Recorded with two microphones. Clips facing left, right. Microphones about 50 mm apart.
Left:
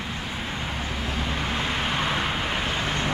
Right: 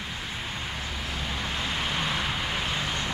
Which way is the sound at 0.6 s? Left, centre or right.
Left.